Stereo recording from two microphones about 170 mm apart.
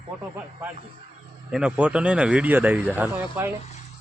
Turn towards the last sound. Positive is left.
turn(degrees=-10)  # may be behind; listen again after turning